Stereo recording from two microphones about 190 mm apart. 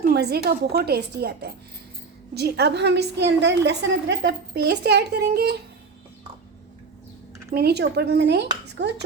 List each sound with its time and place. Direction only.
0.0 s a woman's voice: 60° right (ahead or behind)
7.5 s a woman's voice: 60° right (ahead or behind)